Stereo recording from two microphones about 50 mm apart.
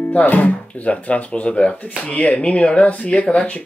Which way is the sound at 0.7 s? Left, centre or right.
Left.